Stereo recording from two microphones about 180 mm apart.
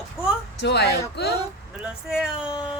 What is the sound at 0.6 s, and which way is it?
Speech, 70° left (ahead or behind).